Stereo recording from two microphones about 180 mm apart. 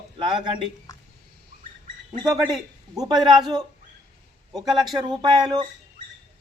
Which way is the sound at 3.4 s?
25° right (ahead or behind).